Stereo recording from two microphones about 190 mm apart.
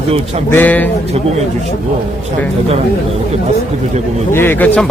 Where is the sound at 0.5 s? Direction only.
10° left (ahead or behind).